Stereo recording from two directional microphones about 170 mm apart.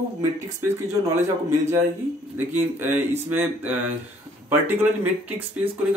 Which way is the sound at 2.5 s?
10° right (ahead or behind).